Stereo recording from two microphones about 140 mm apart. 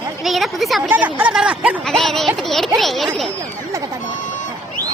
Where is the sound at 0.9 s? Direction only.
10° right (ahead or behind).